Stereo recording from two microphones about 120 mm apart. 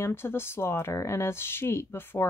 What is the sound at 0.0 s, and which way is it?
Speech, 20° left (ahead or behind).